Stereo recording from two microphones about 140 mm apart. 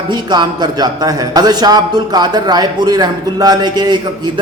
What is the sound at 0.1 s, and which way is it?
A man's voice, 30° right (ahead or behind).